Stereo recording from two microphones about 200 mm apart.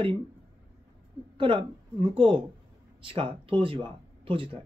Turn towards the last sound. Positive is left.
turn(degrees=-25)  # may be behind; listen again after turning